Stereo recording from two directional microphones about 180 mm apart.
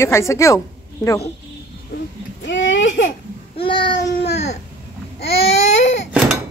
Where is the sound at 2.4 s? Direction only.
90° left.